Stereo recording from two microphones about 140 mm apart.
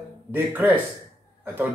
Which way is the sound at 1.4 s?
15° right (ahead or behind).